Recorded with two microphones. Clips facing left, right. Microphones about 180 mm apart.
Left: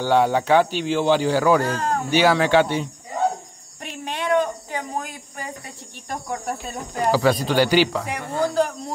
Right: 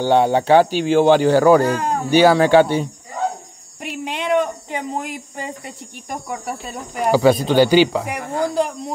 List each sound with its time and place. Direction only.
0.0 s speech: 25° right (ahead or behind); by 1.6 s 50° right (ahead or behind)
1.6 s speech: 15° right (ahead or behind)
2.1 s speech: 40° right (ahead or behind)
3.8 s a sound: 15° right (ahead or behind)
6.0 s speech: 5° right (ahead or behind)
7.1 s speech: 25° right (ahead or behind)
8.1 s speech: 15° right (ahead or behind)